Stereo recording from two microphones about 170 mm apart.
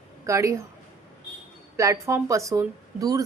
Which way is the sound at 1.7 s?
15° right (ahead or behind).